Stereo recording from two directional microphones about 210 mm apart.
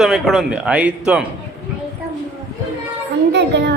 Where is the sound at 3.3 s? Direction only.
55° right (ahead or behind).